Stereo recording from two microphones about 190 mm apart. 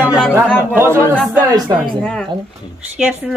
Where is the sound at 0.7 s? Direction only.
15° right (ahead or behind).